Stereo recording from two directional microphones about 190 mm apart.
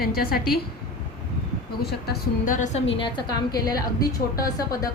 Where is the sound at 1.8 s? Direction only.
55° left (ahead or behind).